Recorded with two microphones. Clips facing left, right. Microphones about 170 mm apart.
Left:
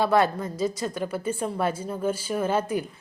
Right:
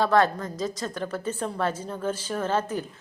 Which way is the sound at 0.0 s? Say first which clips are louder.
Even; 10° left (ahead or behind).